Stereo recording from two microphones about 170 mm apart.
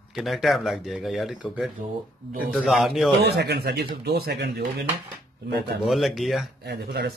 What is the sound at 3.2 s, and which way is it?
Speech, 70° right (ahead or behind).